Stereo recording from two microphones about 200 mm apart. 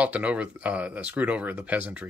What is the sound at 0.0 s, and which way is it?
Speech, 5° right (ahead or behind).